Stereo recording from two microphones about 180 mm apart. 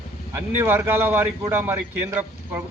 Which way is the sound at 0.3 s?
10° right (ahead or behind).